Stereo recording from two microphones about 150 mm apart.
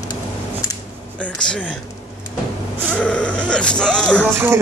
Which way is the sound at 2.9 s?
10° left (ahead or behind).